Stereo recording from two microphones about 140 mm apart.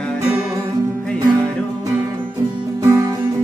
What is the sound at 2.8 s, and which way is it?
Music, 20° right (ahead or behind).